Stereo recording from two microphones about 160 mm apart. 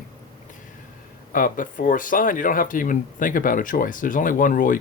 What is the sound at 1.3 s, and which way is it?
Speech, 55° left (ahead or behind).